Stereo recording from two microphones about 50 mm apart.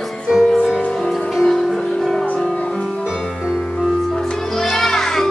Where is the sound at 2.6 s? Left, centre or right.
Left.